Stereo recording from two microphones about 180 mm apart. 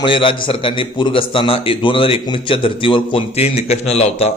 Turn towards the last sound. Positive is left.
turn(degrees=35)  # may be behind; listen again after turning